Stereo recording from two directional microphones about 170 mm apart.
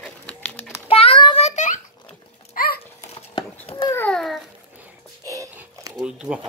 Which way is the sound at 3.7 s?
30° left (ahead or behind).